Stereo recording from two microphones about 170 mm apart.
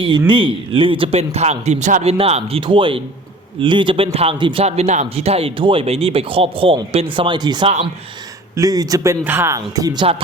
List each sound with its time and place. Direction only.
0.3 s a man's voice: 30° right (ahead or behind)